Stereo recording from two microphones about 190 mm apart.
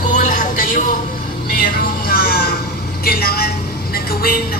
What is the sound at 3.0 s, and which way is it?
Vehicle, 55° left (ahead or behind).